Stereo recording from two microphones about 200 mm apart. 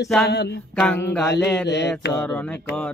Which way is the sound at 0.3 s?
55° left (ahead or behind).